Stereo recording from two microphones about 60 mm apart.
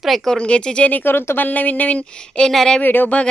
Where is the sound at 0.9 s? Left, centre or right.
Left.